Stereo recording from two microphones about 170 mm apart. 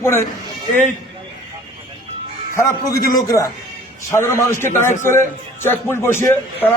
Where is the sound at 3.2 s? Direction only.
20° left (ahead or behind).